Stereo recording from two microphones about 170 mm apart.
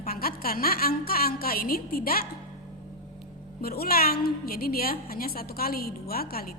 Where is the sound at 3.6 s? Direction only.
60° left (ahead or behind).